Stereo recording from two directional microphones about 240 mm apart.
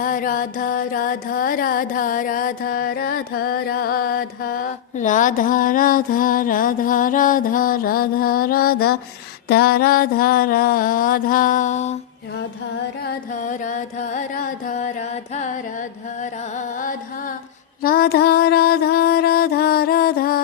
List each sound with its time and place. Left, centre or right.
0.0 s music: left
13.1 s music: left
17.8 s music: left